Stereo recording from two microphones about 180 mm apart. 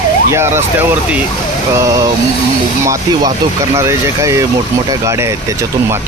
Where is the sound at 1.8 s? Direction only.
20° right (ahead or behind).